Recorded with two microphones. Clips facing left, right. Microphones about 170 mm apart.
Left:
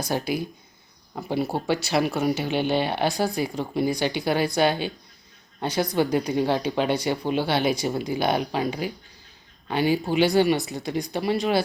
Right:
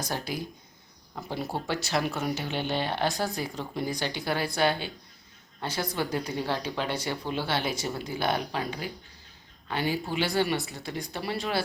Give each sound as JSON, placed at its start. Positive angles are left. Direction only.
{"t": 0.0, "sound": "speech", "side_deg": 10}